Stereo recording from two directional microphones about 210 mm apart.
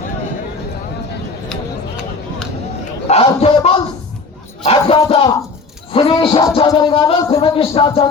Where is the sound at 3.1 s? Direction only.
30° left (ahead or behind).